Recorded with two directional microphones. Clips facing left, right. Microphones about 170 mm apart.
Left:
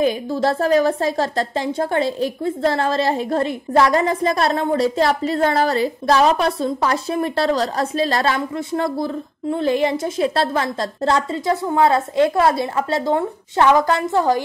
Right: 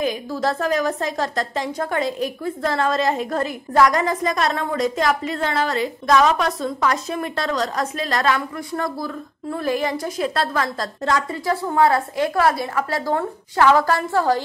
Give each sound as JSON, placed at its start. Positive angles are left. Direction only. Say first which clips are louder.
{"t": 0.0, "sound": "a woman's voice", "louder": "left 4 dB", "side_deg": 30}